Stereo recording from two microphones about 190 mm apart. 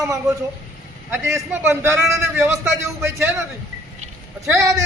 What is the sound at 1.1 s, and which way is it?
Speech, 10° right (ahead or behind).